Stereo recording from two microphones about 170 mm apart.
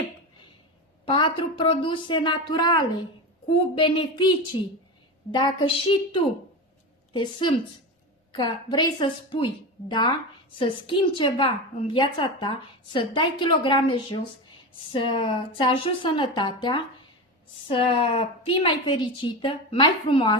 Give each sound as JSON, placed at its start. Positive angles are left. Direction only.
{"t": 1.0, "sound": "a woman's voice", "side_deg": 30}